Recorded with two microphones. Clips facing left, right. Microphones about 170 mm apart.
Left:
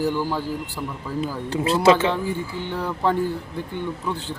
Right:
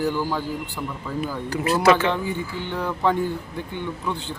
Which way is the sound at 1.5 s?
25° left (ahead or behind).